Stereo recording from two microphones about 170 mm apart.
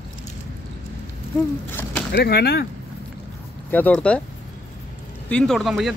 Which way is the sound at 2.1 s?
70° left (ahead or behind).